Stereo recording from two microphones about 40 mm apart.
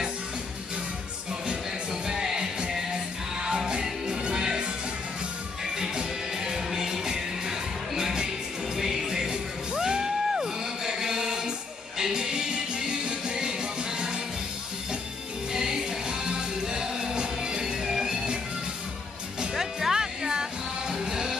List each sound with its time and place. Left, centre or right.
2.0 s music: centre
5.8 s music: centre
15.5 s music: centre
19.5 s music: centre